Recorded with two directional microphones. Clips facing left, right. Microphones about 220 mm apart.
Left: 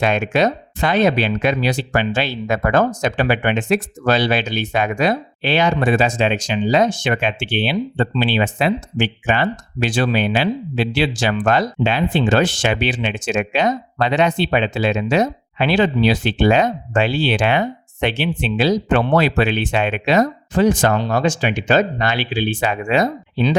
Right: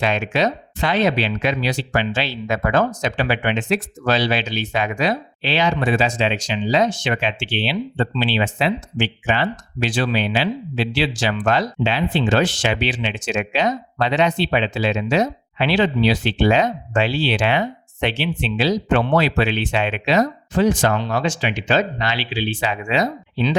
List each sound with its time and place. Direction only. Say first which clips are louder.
0.0 s speech: left 3 dB; 50° left (ahead or behind)